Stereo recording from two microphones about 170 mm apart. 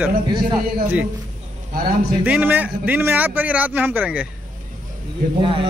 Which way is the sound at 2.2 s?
10° right (ahead or behind).